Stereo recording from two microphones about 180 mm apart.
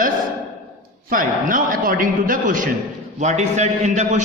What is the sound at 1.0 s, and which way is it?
A man's voice, 50° right (ahead or behind).